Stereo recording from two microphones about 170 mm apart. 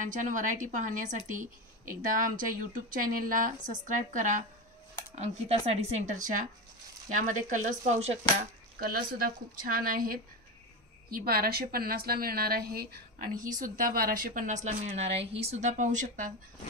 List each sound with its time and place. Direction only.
0.0 s a woman's voice: 50° right (ahead or behind)
8.7 s a woman's voice: 60° right (ahead or behind)
13.4 s a woman's voice: 55° right (ahead or behind)